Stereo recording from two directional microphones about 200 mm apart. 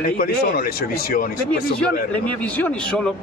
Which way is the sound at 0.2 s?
50° left (ahead or behind).